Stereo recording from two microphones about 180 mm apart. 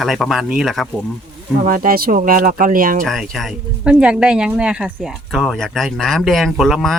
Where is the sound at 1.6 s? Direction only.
50° right (ahead or behind).